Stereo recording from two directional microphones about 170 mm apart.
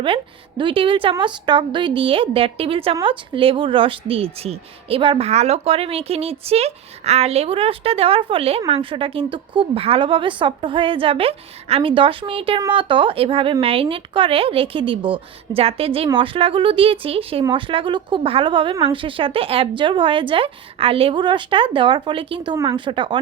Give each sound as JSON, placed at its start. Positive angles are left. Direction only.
{"t": 0.0, "sound": "a woman's voice", "side_deg": -30}